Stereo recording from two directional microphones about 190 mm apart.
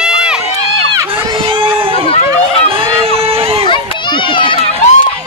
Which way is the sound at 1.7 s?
30° right (ahead or behind).